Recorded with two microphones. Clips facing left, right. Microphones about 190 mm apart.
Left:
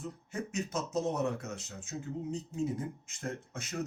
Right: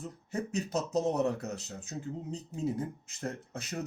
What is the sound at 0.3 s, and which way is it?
Speech, 35° right (ahead or behind).